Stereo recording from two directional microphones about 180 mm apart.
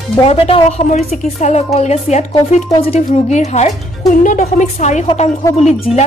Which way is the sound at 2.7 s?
30° left (ahead or behind).